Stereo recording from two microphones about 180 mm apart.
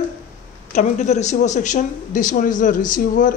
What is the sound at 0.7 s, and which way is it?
Speech, 40° left (ahead or behind).